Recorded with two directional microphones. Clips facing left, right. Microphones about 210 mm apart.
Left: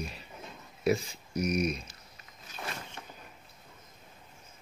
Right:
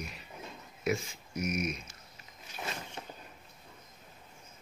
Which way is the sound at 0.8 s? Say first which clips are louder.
Left 4 dB; 35° left (ahead or behind).